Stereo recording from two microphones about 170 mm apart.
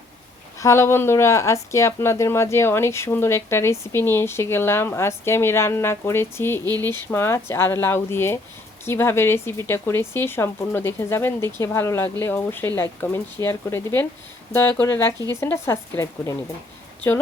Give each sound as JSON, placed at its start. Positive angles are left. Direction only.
{"t": 0.6, "sound": "speech", "side_deg": 15}